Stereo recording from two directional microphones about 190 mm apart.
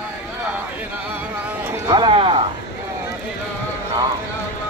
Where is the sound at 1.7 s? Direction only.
20° right (ahead or behind).